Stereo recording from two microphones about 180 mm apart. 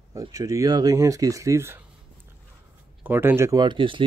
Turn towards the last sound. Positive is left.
turn(degrees=-25)  # may be behind; listen again after turning